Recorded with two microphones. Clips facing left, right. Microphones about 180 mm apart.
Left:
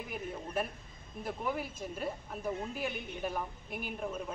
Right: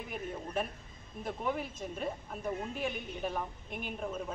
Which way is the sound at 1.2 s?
5° left (ahead or behind).